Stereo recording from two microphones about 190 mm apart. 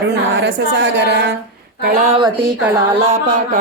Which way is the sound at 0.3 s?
65° right (ahead or behind).